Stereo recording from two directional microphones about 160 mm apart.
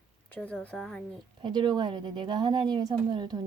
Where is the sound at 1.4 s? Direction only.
30° right (ahead or behind).